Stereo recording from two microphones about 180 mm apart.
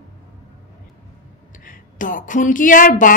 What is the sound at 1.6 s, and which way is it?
A woman's voice, 50° left (ahead or behind).